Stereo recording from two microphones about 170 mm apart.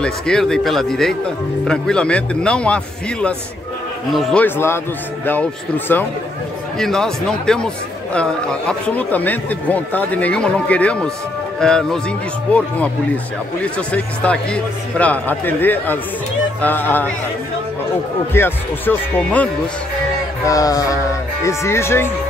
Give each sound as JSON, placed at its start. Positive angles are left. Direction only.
{"t": 0.0, "sound": "a man's voice", "side_deg": 5}
{"t": 18.3, "sound": "speech", "side_deg": 10}
{"t": 20.4, "sound": "music", "side_deg": 20}
{"t": 21.5, "sound": "speech", "side_deg": 15}